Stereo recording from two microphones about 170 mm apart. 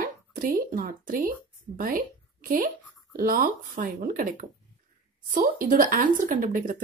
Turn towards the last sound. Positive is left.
turn(degrees=-50)  # may be behind; listen again after turning